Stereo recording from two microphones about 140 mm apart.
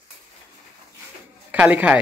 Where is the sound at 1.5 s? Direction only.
10° right (ahead or behind).